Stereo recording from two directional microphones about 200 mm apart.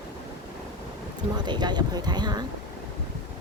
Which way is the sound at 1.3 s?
20° right (ahead or behind).